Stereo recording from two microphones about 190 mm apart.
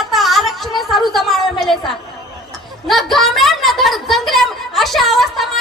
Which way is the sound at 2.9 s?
Centre (ahead or behind).